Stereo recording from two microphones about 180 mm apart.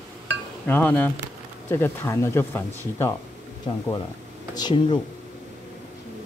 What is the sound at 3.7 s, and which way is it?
Speech, 25° left (ahead or behind).